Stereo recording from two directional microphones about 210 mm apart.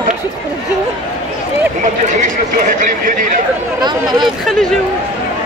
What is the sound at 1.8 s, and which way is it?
Speech, 40° right (ahead or behind).